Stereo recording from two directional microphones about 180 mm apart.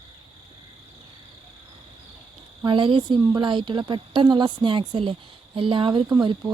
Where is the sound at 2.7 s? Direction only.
25° right (ahead or behind).